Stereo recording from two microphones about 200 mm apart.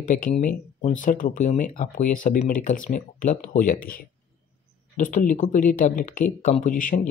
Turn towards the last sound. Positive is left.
turn(degrees=40)  # may be behind; listen again after turning